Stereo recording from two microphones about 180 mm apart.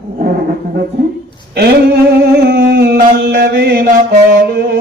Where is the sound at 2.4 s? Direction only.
60° right (ahead or behind).